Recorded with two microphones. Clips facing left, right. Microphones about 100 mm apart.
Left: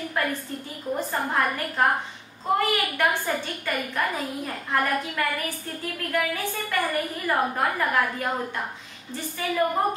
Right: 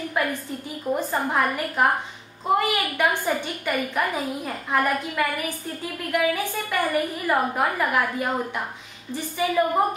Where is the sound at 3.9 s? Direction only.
10° right (ahead or behind).